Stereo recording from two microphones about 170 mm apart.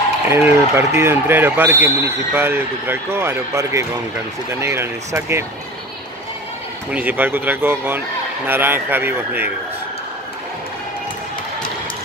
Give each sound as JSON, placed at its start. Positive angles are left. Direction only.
{"t": 0.3, "sound": "speech", "side_deg": -15}
{"t": 6.9, "sound": "speech", "side_deg": -10}